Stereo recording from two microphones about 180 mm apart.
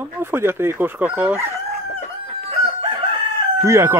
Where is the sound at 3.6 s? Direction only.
15° right (ahead or behind).